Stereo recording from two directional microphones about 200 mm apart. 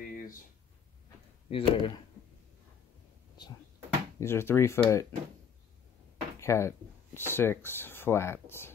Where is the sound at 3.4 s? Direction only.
20° left (ahead or behind).